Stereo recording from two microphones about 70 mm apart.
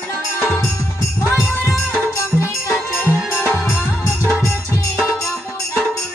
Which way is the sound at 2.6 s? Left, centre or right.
Left.